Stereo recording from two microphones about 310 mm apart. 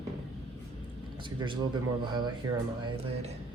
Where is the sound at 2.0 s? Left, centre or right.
Centre.